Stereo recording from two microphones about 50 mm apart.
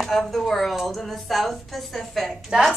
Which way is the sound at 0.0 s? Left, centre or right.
Centre.